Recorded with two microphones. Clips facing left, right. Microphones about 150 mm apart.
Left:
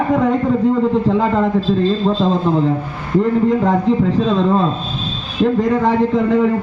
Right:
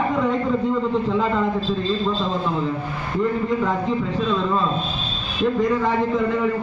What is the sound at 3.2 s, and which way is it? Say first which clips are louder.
A man's voice: left 7 dB; 65° left (ahead or behind).